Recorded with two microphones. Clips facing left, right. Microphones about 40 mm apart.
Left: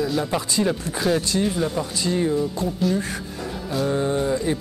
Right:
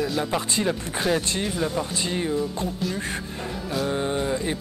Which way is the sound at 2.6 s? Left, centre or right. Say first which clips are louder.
Left 3 dB; right.